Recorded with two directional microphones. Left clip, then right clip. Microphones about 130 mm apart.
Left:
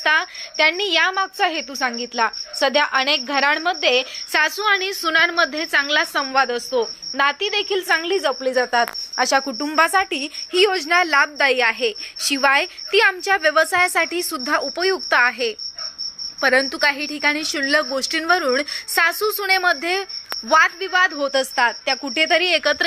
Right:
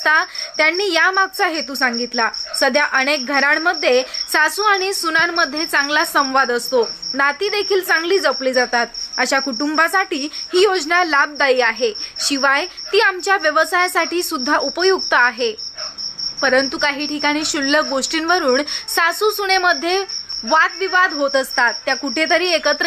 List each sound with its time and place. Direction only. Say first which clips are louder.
0.0 s a woman's voice: right 3 dB; 15° left (ahead or behind)